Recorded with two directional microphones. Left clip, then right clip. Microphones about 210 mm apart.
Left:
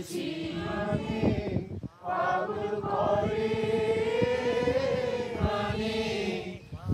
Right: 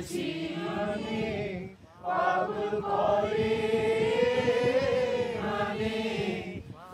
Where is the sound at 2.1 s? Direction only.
45° right (ahead or behind).